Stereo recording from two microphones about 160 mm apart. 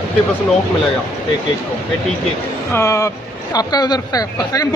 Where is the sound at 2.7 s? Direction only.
20° left (ahead or behind).